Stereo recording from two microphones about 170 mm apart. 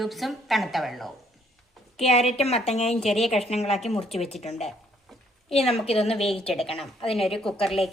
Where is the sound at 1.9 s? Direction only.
35° left (ahead or behind).